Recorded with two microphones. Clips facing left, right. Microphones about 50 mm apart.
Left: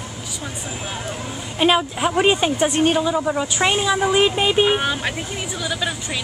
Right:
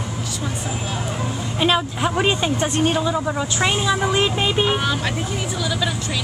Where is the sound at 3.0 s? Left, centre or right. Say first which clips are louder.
Left 2 dB; centre.